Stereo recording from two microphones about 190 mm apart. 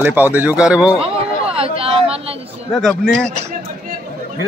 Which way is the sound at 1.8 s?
30° right (ahead or behind).